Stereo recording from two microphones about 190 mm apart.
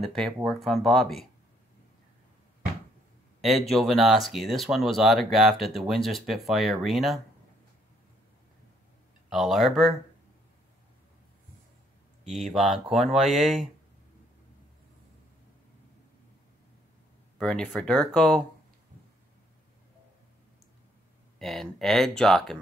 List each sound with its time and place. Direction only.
0.0 s speech: centre (ahead or behind)
3.3 s speech: centre (ahead or behind)
9.3 s speech: centre (ahead or behind)
12.3 s speech: centre (ahead or behind)
17.4 s speech: 5° left (ahead or behind)
21.4 s speech: centre (ahead or behind)